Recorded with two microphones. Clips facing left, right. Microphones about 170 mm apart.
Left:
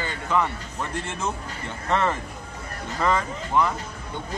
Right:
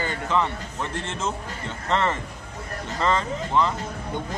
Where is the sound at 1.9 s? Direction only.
15° left (ahead or behind).